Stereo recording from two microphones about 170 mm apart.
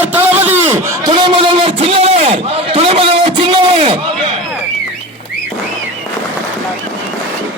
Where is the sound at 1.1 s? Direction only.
30° right (ahead or behind).